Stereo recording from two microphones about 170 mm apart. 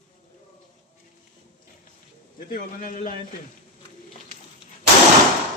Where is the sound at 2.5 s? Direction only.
55° left (ahead or behind).